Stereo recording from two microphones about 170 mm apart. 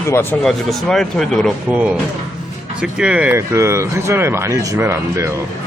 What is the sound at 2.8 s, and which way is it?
Speech, 5° right (ahead or behind).